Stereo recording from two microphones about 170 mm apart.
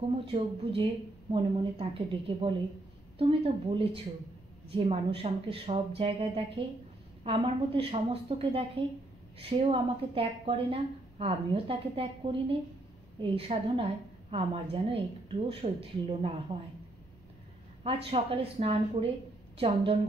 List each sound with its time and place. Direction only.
0.2 s a woman's voice: 30° right (ahead or behind)
17.8 s a woman's voice: 35° right (ahead or behind)